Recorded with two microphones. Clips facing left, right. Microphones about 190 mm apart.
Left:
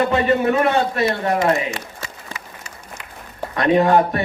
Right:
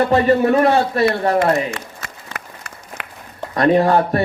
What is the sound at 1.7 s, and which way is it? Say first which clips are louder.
Applause: even; 60° right (ahead or behind).